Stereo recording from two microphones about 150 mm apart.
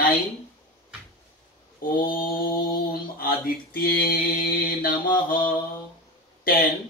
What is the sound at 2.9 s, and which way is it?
Mantra, 85° left.